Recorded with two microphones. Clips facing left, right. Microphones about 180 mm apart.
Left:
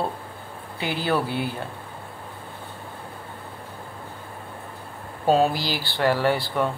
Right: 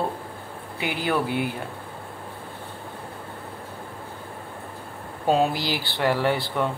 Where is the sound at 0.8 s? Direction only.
15° right (ahead or behind).